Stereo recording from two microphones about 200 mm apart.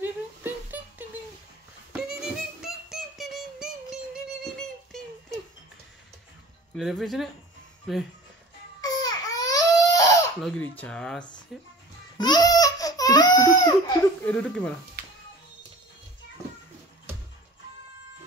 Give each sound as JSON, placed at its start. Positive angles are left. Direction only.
{"t": 0.0, "sound": "a sound", "side_deg": -10}
{"t": 1.9, "sound": "music", "side_deg": -5}
{"t": 3.9, "sound": "a sound", "side_deg": 0}
{"t": 6.7, "sound": "speech", "side_deg": 0}
{"t": 8.8, "sound": "baby cry", "side_deg": 20}
{"t": 10.4, "sound": "speech", "side_deg": 5}
{"t": 12.2, "sound": "baby cry", "side_deg": 20}
{"t": 14.2, "sound": "speech", "side_deg": 5}